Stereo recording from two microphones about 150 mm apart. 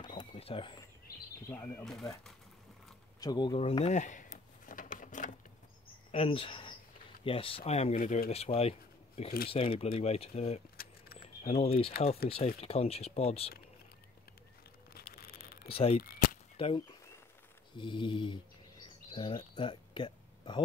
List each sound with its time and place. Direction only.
0.0 s a sound: 30° left (ahead or behind)
1.5 s speech: 15° left (ahead or behind)
1.9 s speech: centre (ahead or behind)
3.2 s speech: 30° left (ahead or behind)
3.6 s a sound: 45° left (ahead or behind)
6.1 s speech: 40° left (ahead or behind)
7.9 s speech: 65° left (ahead or behind)
8.3 s speech: 40° left (ahead or behind)
11.1 s keys jangling: 45° left (ahead or behind)
12.5 s speech: 45° left (ahead or behind)
14.9 s a sound: 90° left
15.7 s speech: 40° left (ahead or behind)